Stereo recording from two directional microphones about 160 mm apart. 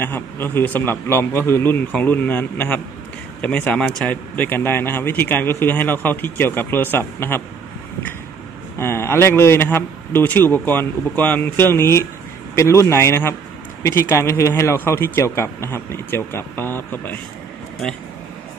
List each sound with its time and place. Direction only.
0.0 s speech: 15° left (ahead or behind)
8.7 s speech: 15° left (ahead or behind)